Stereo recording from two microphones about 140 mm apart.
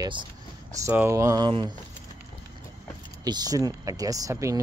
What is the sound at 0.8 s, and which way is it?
Speech, 20° right (ahead or behind).